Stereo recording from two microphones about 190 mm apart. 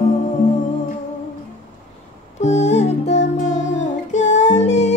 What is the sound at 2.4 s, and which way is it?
Music, 35° left (ahead or behind).